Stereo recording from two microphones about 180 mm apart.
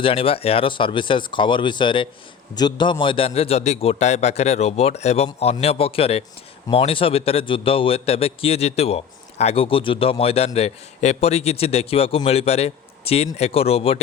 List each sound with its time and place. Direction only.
0.0 s a man's voice: 30° left (ahead or behind)